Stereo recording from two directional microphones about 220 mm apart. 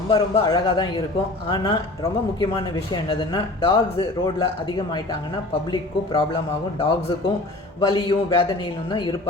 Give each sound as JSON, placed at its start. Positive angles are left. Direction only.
{"t": 0.1, "sound": "speech", "side_deg": 20}
{"t": 5.7, "sound": "speech", "side_deg": 20}